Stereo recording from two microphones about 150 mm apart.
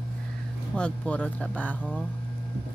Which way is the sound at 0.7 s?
5° left (ahead or behind).